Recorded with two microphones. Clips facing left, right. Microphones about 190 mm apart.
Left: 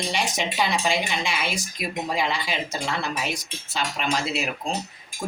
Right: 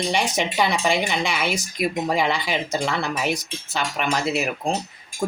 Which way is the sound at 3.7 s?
55° right (ahead or behind).